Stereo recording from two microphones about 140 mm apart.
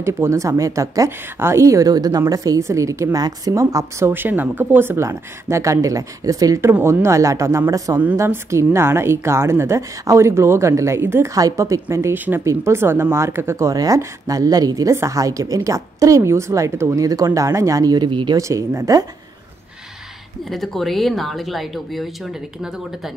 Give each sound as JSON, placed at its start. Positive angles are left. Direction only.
{"t": 0.0, "sound": "speech", "side_deg": -20}
{"t": 18.4, "sound": "speech", "side_deg": -20}
{"t": 20.4, "sound": "speech", "side_deg": 0}